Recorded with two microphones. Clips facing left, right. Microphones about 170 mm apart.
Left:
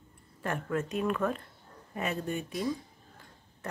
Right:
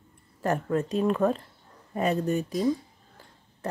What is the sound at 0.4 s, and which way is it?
Speech, 35° right (ahead or behind).